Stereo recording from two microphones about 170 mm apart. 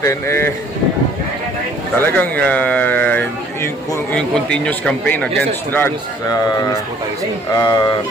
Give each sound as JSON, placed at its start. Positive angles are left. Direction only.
{"t": 0.0, "sound": "a man's voice", "side_deg": 15}
{"t": 2.0, "sound": "a man's voice", "side_deg": 10}